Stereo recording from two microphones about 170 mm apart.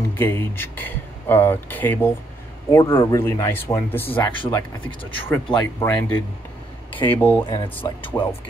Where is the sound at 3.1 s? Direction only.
15° left (ahead or behind).